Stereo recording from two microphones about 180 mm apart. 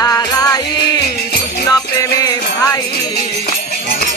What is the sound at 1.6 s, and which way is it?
Music, 20° left (ahead or behind).